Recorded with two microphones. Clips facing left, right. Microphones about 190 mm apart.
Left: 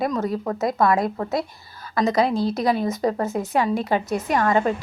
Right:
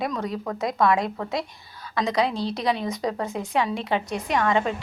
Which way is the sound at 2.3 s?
5° left (ahead or behind).